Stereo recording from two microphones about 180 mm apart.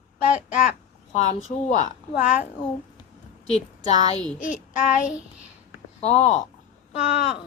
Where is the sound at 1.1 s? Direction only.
40° left (ahead or behind).